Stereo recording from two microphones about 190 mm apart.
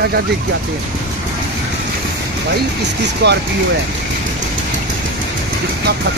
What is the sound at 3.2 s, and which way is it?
Speech, 60° right (ahead or behind).